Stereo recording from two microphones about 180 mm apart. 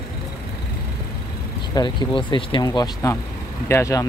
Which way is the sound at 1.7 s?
25° left (ahead or behind).